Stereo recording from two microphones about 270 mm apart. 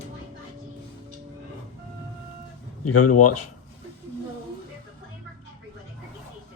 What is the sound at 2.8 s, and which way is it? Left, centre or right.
Speech, left.